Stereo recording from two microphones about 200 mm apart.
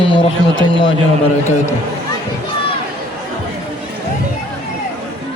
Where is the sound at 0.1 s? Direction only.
25° left (ahead or behind).